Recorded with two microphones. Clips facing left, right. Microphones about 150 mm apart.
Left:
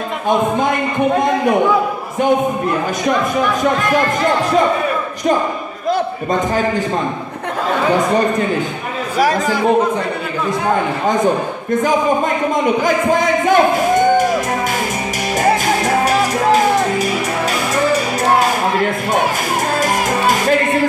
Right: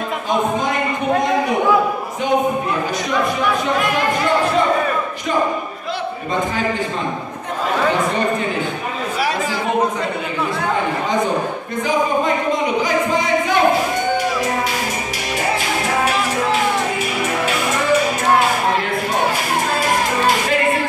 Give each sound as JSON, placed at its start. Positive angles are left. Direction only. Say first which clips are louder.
{"t": 12.8, "sound": "speech", "louder": "left 4 dB", "side_deg": 50}
{"t": 15.4, "sound": "music", "louder": "left 6 dB", "side_deg": 40}